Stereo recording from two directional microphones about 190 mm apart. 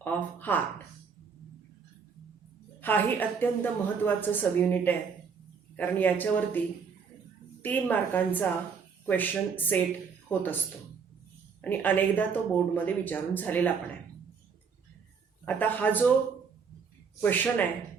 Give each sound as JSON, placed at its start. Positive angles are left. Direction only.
{"t": 0.0, "sound": "speech", "side_deg": 10}
{"t": 2.8, "sound": "speech", "side_deg": 10}
{"t": 7.6, "sound": "speech", "side_deg": 10}
{"t": 11.6, "sound": "speech", "side_deg": 10}
{"t": 15.4, "sound": "speech", "side_deg": 10}
{"t": 17.2, "sound": "speech", "side_deg": 10}